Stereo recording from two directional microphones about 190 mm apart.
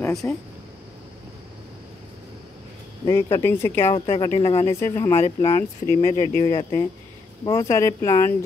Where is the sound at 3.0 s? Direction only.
15° left (ahead or behind); by 4.7 s 30° left (ahead or behind).